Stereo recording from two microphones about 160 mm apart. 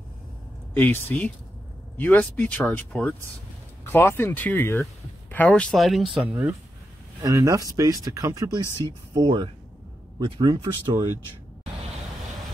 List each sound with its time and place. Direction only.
0.7 s speech: 10° left (ahead or behind)
7.2 s speech: 20° right (ahead or behind)